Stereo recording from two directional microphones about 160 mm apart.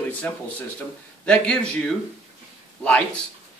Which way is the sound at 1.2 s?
5° left (ahead or behind).